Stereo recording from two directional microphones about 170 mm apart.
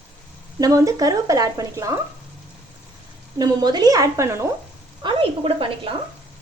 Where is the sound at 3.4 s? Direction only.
25° right (ahead or behind).